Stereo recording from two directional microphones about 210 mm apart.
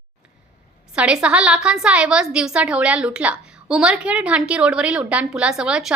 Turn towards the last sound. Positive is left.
turn(degrees=-5)  # may be behind; listen again after turning